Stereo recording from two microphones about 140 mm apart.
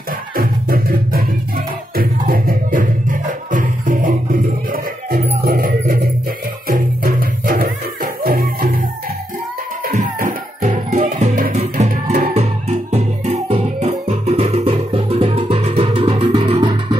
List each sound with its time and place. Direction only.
0.4 s music: 90° right; by 4.1 s 70° right (ahead or behind)
5.4 s music: 85° right
9.8 s music: 85° right; by 12.3 s 65° right (ahead or behind)
12.4 s music: 50° right (ahead or behind)